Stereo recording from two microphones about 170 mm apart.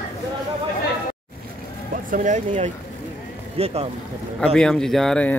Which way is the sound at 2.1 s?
50° right (ahead or behind).